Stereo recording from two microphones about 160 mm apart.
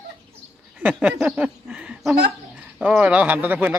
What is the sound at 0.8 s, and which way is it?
Speech, 10° right (ahead or behind).